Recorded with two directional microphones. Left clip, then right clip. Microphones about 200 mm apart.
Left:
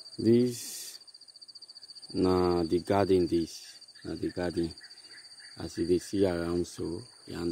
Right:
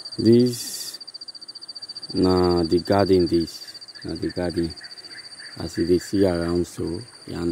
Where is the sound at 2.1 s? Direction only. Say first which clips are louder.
Right 7 dB; centre (ahead or behind).